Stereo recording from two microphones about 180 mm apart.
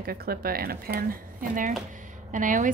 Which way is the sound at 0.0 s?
55° right (ahead or behind).